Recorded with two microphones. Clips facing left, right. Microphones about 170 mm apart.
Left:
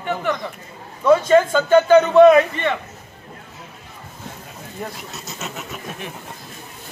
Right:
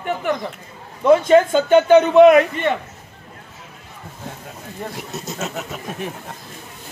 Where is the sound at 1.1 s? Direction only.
20° right (ahead or behind).